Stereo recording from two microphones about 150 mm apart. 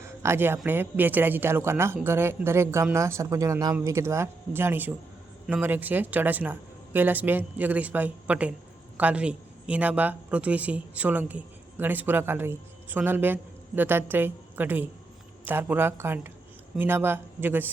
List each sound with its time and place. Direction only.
0.0 s a man's voice: 20° right (ahead or behind)